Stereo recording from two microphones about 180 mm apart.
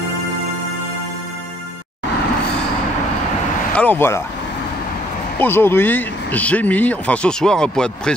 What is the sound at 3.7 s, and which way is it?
Speech, 10° left (ahead or behind).